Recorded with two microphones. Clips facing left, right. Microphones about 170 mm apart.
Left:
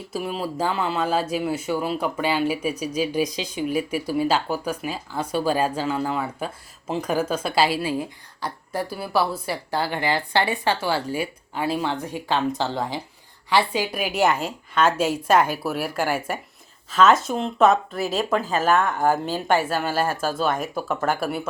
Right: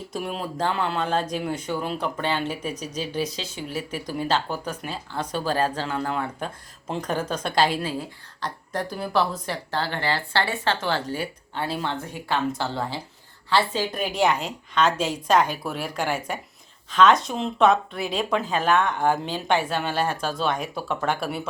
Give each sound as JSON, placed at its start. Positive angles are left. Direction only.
{"t": 0.1, "sound": "speech", "side_deg": 0}